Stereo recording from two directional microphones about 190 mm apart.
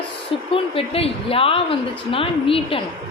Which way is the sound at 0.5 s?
30° left (ahead or behind).